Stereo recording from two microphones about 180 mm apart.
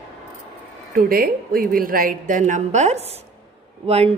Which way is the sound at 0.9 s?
55° right (ahead or behind).